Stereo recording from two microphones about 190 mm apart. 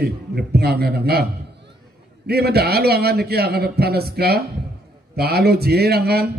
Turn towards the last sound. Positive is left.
turn(degrees=-55)  # may be behind; listen again after turning